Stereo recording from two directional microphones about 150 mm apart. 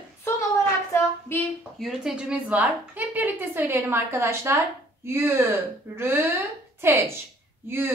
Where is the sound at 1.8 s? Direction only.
Centre (ahead or behind).